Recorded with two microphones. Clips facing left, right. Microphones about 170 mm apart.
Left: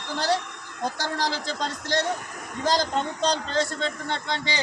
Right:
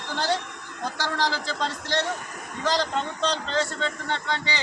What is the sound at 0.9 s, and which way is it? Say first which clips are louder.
A man's voice: right 4 dB; 40° left (ahead or behind).